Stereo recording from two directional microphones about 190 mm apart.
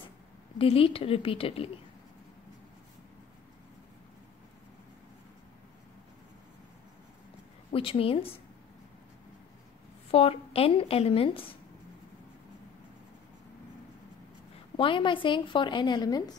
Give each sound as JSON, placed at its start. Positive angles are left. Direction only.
{"t": 0.6, "sound": "a woman's voice", "side_deg": 30}
{"t": 7.7, "sound": "a woman's voice", "side_deg": 30}
{"t": 10.1, "sound": "a woman's voice", "side_deg": 30}
{"t": 14.8, "sound": "a woman's voice", "side_deg": 25}